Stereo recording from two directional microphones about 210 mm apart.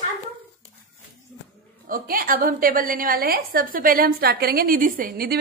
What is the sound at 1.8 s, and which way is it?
A woman's voice, 45° right (ahead or behind).